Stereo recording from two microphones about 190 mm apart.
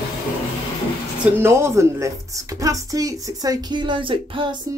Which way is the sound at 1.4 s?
15° right (ahead or behind).